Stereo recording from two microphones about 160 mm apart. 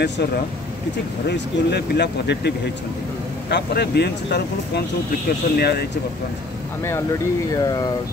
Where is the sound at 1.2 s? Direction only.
90° left.